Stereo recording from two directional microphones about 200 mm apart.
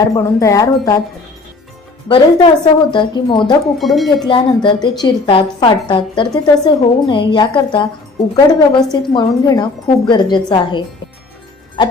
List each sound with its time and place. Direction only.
0.2 s speech: 15° left (ahead or behind)
2.0 s a woman's voice: 25° left (ahead or behind)
3.8 s speech: centre (ahead or behind)
4.3 s a woman's voice: 25° left (ahead or behind)